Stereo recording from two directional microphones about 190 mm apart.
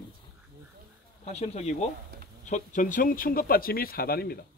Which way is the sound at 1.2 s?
35° left (ahead or behind).